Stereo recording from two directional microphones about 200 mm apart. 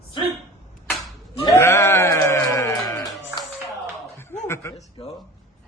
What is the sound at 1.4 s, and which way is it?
Bleat, 15° left (ahead or behind).